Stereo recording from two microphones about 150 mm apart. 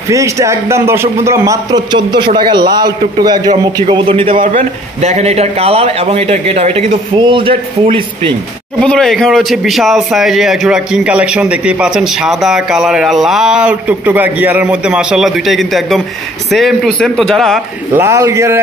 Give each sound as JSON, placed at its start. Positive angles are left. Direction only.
{"t": 0.1, "sound": "a man's voice", "side_deg": -20}
{"t": 4.4, "sound": "a man's voice", "side_deg": -55}
{"t": 7.2, "sound": "speech", "side_deg": -35}
{"t": 8.8, "sound": "a man's voice", "side_deg": 5}
{"t": 17.9, "sound": "a man's voice", "side_deg": -20}